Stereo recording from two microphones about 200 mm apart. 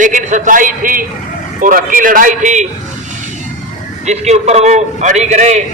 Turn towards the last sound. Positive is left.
turn(degrees=-35)  # may be behind; listen again after turning